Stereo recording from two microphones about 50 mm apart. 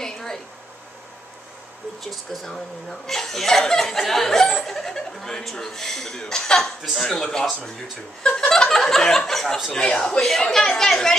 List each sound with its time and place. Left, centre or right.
0.0 s a sound: centre
2.0 s speech: centre
8.3 s chuckle: centre
9.7 s speech: centre
10.2 s speech: centre